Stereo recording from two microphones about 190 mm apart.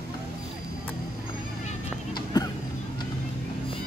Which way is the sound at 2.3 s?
20° left (ahead or behind).